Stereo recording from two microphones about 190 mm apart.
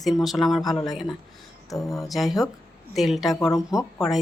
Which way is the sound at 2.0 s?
Centre (ahead or behind).